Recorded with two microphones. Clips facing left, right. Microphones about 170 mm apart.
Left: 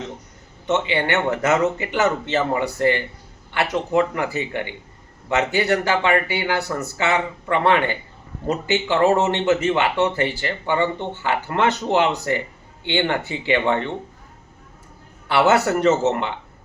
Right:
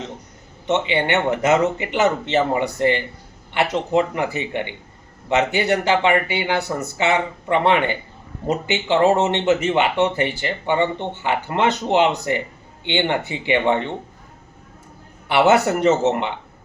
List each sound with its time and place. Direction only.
0.7 s speech: 20° right (ahead or behind)
15.3 s speech: 20° right (ahead or behind)